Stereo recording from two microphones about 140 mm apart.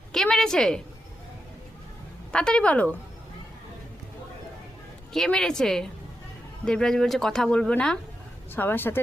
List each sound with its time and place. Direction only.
0.1 s a woman's voice: 5° left (ahead or behind)
2.3 s a woman's voice: 5° left (ahead or behind)
5.1 s a woman's voice: 5° left (ahead or behind)